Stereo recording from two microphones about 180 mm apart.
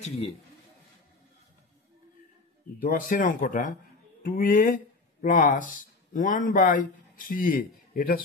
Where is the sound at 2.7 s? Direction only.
50° left (ahead or behind).